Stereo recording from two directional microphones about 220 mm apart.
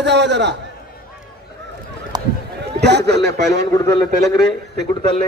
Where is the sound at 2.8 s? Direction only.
50° right (ahead or behind).